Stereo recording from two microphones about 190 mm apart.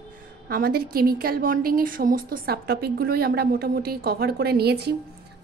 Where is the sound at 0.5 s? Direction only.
50° right (ahead or behind).